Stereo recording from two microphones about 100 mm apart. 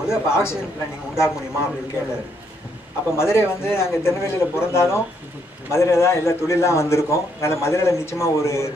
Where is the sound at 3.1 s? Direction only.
25° left (ahead or behind).